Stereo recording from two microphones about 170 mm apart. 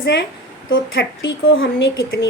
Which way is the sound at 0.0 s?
90° left.